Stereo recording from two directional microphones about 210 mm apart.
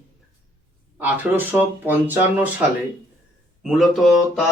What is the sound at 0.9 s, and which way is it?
Speech, 10° right (ahead or behind).